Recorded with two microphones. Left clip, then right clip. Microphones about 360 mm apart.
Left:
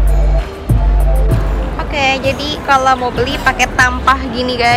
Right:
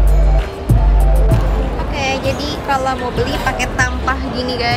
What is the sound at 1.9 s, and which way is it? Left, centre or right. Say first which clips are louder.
Speech: left 6 dB; centre.